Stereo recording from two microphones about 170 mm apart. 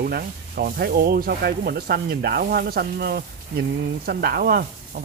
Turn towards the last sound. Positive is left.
turn(degrees=-65)  # may be behind; listen again after turning